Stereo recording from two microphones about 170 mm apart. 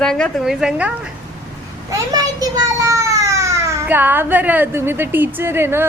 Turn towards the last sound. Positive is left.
turn(degrees=-15)  # may be behind; listen again after turning